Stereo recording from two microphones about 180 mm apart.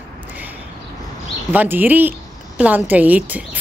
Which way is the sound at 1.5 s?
10° right (ahead or behind).